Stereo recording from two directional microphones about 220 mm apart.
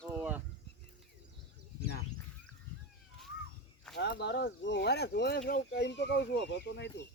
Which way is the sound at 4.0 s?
50° left (ahead or behind).